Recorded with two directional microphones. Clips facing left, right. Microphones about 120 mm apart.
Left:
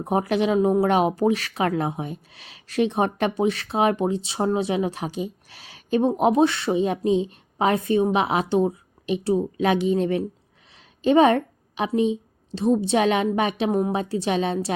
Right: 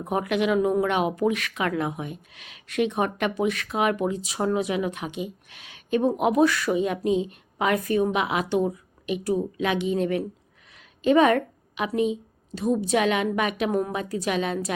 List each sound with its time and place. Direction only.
0.0 s a woman's voice: 30° left (ahead or behind)